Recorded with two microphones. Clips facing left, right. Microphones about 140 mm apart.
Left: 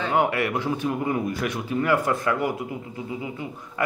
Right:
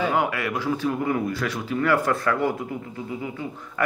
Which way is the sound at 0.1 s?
25° left (ahead or behind).